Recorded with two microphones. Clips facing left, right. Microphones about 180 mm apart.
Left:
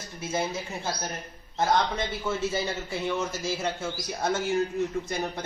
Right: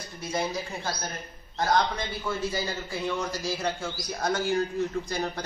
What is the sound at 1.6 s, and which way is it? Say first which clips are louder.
A man's voice: left 1 dB; 25° left (ahead or behind).